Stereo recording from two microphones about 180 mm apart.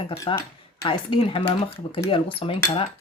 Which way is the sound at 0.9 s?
30° left (ahead or behind).